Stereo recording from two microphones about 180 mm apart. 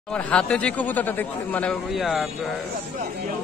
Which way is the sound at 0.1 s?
5° left (ahead or behind).